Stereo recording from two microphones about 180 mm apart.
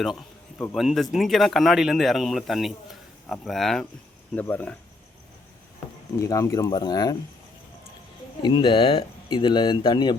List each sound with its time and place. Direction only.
0.0 s speech: centre (ahead or behind)
6.1 s speech: 15° left (ahead or behind)
8.4 s speech: 25° left (ahead or behind)